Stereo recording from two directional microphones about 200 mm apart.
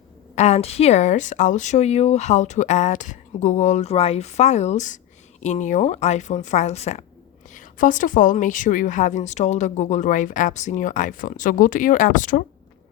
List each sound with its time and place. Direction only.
0.3 s a woman's voice: 35° left (ahead or behind)